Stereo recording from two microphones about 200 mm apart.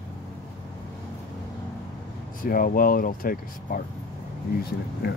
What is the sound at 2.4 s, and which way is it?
Speech, 45° left (ahead or behind).